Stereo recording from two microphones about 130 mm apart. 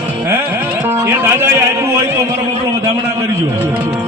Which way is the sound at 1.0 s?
20° right (ahead or behind).